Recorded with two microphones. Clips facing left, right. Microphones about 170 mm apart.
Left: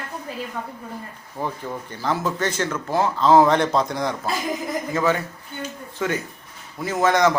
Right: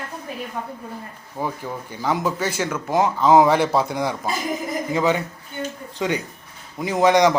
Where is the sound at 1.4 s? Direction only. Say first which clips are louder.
Right 1 dB; 10° right (ahead or behind).